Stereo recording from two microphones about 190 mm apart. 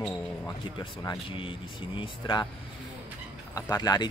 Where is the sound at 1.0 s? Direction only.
15° left (ahead or behind).